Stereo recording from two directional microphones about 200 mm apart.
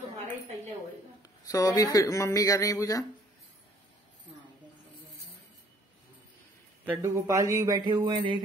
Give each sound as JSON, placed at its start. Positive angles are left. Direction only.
{"t": 1.5, "sound": "speech", "side_deg": 15}
{"t": 6.9, "sound": "speech", "side_deg": -15}